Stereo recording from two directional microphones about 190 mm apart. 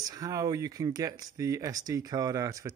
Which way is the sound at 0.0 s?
20° right (ahead or behind).